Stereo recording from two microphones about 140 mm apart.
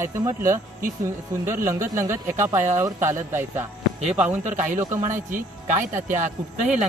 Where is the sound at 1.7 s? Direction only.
20° right (ahead or behind).